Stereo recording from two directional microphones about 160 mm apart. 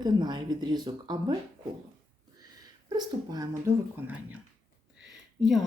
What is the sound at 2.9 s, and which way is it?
Speech, 25° right (ahead or behind).